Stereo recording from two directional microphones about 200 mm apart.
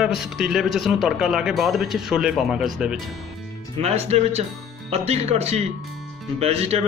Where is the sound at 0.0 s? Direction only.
Centre (ahead or behind).